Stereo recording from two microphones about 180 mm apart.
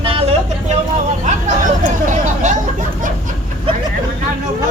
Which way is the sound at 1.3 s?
45° right (ahead or behind).